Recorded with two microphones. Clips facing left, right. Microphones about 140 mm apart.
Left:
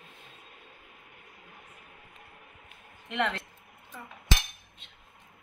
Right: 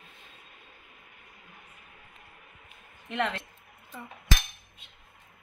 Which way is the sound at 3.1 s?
Centre (ahead or behind).